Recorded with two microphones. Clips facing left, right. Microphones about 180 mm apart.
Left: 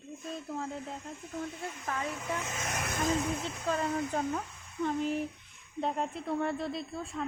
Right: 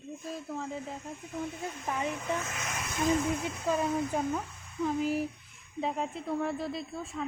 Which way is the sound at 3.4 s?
10° right (ahead or behind).